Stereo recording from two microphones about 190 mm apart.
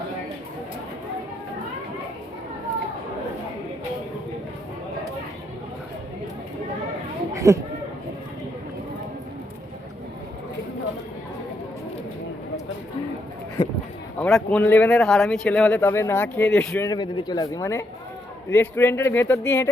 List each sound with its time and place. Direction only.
7.3 s speech: 15° right (ahead or behind)
14.2 s speech: 5° left (ahead or behind)
16.9 s speech: 25° left (ahead or behind)